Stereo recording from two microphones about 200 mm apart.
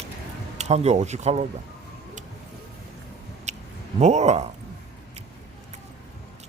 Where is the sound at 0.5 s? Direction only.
35° right (ahead or behind).